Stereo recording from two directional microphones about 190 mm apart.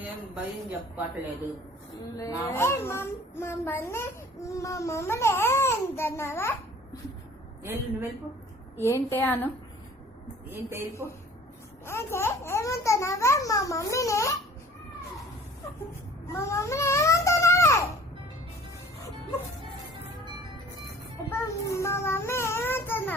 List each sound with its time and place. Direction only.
2.1 s a child's voice: 15° left (ahead or behind)
7.6 s a woman's voice: 10° right (ahead or behind)
8.7 s a child's voice: 15° left (ahead or behind)
11.0 s a woman's voice: 10° right (ahead or behind)
11.9 s a child's voice: 15° left (ahead or behind)
16.2 s babbling: 15° left (ahead or behind)
21.2 s a child's voice: 15° left (ahead or behind)